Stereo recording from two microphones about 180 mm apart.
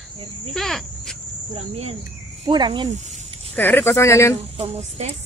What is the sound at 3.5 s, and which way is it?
Speech, 10° left (ahead or behind).